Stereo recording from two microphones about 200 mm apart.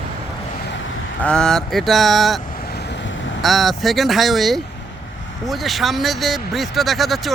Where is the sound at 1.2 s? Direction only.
5° left (ahead or behind).